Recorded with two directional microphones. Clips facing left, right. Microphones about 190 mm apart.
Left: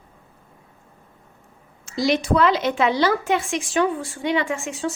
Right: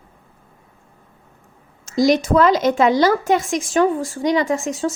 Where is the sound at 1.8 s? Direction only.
45° right (ahead or behind).